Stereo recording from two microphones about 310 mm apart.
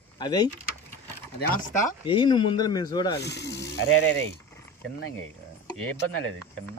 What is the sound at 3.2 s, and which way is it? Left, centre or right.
Speech, left.